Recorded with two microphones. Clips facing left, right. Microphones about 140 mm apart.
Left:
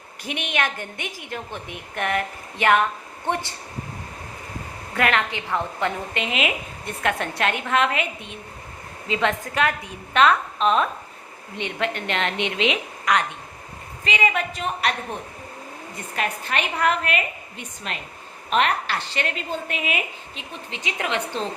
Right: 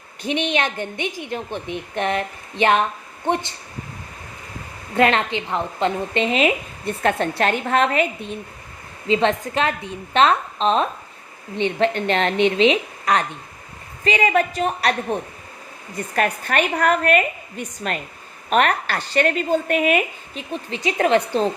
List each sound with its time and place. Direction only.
0.2 s a woman's voice: 25° right (ahead or behind)
4.9 s a woman's voice: 25° right (ahead or behind)
6.2 s a woman's voice: 35° right (ahead or behind)
16.1 s a woman's voice: 50° right (ahead or behind)